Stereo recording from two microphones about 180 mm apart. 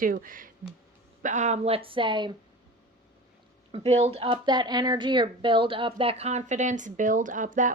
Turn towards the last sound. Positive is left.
turn(degrees=-45)  # may be behind; listen again after turning